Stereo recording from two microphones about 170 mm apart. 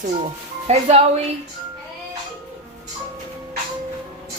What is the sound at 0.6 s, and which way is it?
Speech, 40° right (ahead or behind).